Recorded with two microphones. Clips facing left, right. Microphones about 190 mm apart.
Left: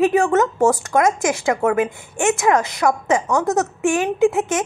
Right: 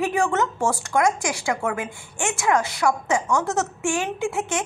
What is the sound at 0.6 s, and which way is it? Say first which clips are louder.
Speech: left 7 dB; 40° left (ahead or behind).